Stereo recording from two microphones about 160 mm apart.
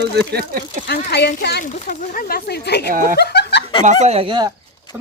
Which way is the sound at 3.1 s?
90° left.